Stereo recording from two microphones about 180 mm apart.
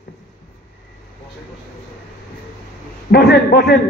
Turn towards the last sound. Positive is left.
turn(degrees=65)  # may be behind; listen again after turning